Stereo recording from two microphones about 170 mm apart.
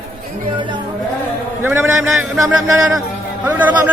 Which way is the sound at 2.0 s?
Centre (ahead or behind).